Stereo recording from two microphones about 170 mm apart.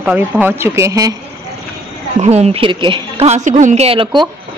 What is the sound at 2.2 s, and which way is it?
A woman's voice, 35° right (ahead or behind).